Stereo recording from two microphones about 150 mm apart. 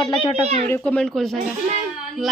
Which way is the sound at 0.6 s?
10° left (ahead or behind).